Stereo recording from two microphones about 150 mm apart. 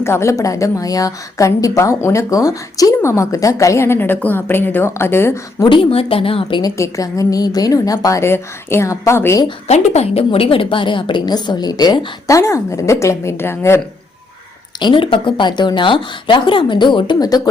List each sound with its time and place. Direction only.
0.0 s a woman's voice: 15° left (ahead or behind)
5.6 s a woman's voice: 35° left (ahead or behind); by 9.5 s 20° left (ahead or behind)
9.6 s a woman's voice: 45° left (ahead or behind); by 13.8 s 15° left (ahead or behind)
14.8 s speech: 30° left (ahead or behind)